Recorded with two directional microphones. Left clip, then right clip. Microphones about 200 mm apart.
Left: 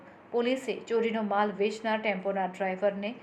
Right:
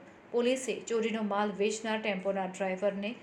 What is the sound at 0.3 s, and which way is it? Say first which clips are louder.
A woman's voice: left 1 dB; 30° right (ahead or behind).